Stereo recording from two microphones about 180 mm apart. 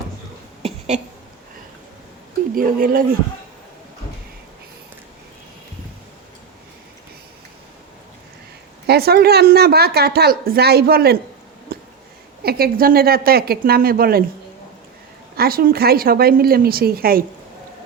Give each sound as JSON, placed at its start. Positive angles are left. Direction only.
{"t": 2.6, "sound": "speech", "side_deg": -50}
{"t": 8.9, "sound": "speech", "side_deg": -60}
{"t": 11.7, "sound": "a sound", "side_deg": -55}
{"t": 12.4, "sound": "speech", "side_deg": -60}
{"t": 15.4, "sound": "speech", "side_deg": -55}